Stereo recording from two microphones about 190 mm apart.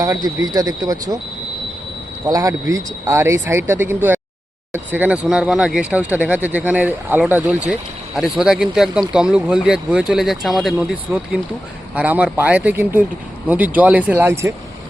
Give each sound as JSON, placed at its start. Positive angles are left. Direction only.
{"t": 0.0, "sound": "speech", "side_deg": -20}
{"t": 2.2, "sound": "speech", "side_deg": -20}